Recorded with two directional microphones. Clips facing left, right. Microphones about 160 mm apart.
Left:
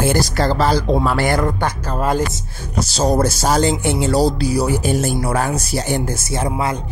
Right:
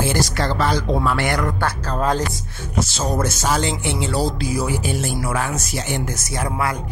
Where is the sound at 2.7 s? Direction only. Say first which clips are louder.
Left 5 dB; 35° left (ahead or behind).